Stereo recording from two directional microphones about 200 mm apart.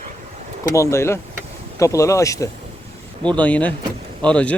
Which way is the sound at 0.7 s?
15° left (ahead or behind).